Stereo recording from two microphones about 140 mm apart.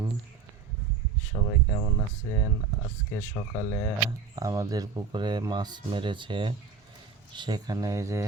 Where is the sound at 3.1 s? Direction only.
15° left (ahead or behind).